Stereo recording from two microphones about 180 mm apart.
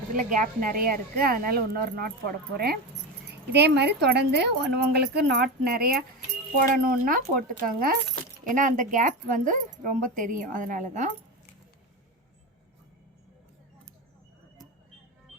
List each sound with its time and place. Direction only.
0.1 s speech: 45° right (ahead or behind)
3.5 s a woman's voice: 70° right (ahead or behind); by 11.1 s 40° right (ahead or behind)